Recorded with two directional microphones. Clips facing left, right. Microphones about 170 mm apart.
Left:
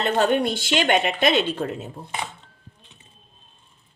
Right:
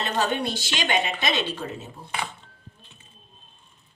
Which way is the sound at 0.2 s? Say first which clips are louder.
Left 4 dB; 55° left (ahead or behind).